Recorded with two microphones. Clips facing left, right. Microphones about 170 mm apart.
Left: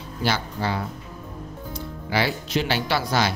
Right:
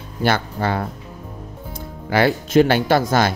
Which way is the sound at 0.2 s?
55° right (ahead or behind).